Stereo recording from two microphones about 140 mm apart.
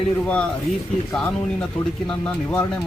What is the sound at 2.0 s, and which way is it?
Speech, 10° left (ahead or behind).